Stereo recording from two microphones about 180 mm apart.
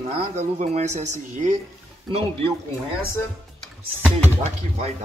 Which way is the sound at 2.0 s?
30° right (ahead or behind).